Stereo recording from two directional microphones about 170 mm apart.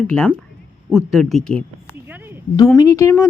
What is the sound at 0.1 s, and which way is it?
Speech, 5° left (ahead or behind).